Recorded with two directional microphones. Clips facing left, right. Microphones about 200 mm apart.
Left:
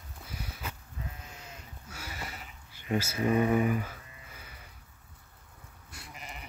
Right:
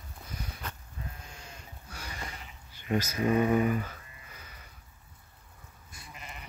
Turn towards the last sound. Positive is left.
turn(degrees=70)  # may be behind; listen again after turning